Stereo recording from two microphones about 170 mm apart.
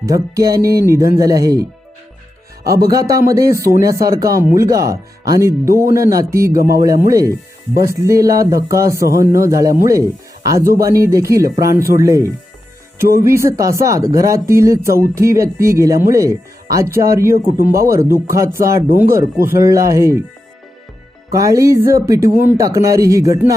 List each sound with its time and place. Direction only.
0.0 s speech: 20° right (ahead or behind)
2.6 s speech: 20° right (ahead or behind)
21.3 s speech: 20° right (ahead or behind)